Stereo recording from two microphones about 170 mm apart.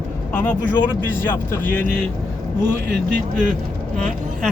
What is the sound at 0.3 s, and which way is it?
Speech, 10° left (ahead or behind).